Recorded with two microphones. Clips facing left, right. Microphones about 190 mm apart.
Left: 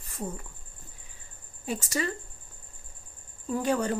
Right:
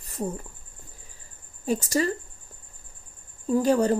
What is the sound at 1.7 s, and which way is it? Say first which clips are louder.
Speech: right 6 dB; 40° right (ahead or behind).